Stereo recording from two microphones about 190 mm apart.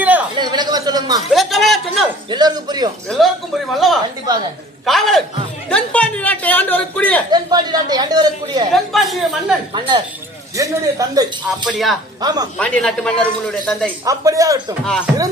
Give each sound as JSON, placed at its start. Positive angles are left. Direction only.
{"t": 0.0, "sound": "a sound", "side_deg": -10}
{"t": 0.3, "sound": "a sound", "side_deg": -20}
{"t": 1.3, "sound": "a sound", "side_deg": 0}
{"t": 2.3, "sound": "speech", "side_deg": -20}
{"t": 3.1, "sound": "a man's voice", "side_deg": 0}
{"t": 5.6, "sound": "a sound", "side_deg": 5}
{"t": 7.3, "sound": "speech", "side_deg": -20}
{"t": 8.7, "sound": "a man's voice", "side_deg": 0}
{"t": 10.6, "sound": "a man's voice", "side_deg": -20}
{"t": 11.6, "sound": "a man's voice", "side_deg": 0}
{"t": 12.2, "sound": "speech", "side_deg": -20}
{"t": 12.5, "sound": "a man's voice", "side_deg": 5}
{"t": 14.0, "sound": "a man's voice", "side_deg": -15}
{"t": 14.8, "sound": "a man's voice", "side_deg": 5}